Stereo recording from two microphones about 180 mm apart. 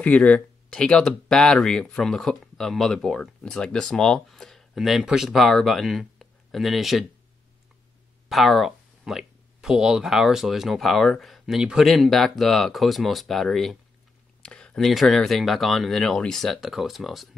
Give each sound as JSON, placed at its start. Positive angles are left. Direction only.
{"t": 0.0, "sound": "speech", "side_deg": 5}
{"t": 8.3, "sound": "speech", "side_deg": 0}